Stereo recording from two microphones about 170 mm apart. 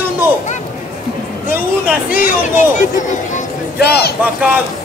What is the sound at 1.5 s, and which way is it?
Speech, 10° right (ahead or behind).